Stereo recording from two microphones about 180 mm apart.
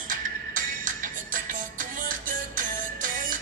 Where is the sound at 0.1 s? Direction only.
50° right (ahead or behind).